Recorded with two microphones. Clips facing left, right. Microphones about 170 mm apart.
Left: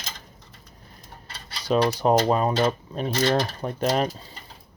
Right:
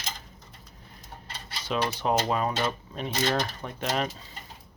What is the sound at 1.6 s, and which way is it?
Speech, 40° left (ahead or behind).